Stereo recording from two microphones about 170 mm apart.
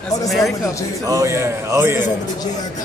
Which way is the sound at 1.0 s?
20° right (ahead or behind).